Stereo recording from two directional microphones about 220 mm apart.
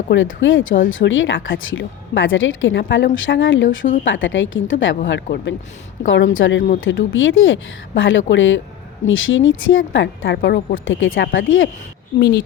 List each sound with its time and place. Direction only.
0.1 s speech: 60° left (ahead or behind)